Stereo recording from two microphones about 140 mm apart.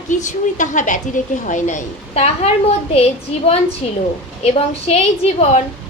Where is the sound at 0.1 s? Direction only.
65° left (ahead or behind); by 5.5 s 50° left (ahead or behind).